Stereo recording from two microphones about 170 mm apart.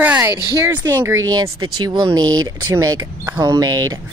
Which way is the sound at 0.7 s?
15° right (ahead or behind).